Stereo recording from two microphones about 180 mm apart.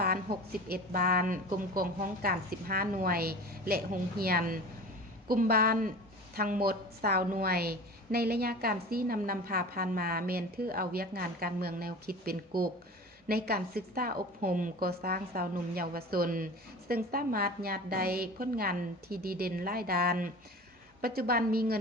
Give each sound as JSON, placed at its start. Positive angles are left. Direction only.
{"t": 0.7, "sound": "a woman's voice", "side_deg": -55}